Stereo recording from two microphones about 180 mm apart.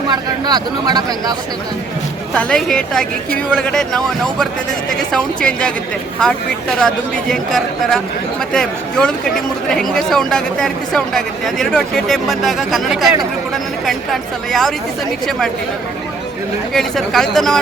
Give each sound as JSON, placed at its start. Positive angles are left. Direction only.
{"t": 0.1, "sound": "speech", "side_deg": -20}
{"t": 2.3, "sound": "speech", "side_deg": 5}
{"t": 16.7, "sound": "speech", "side_deg": 0}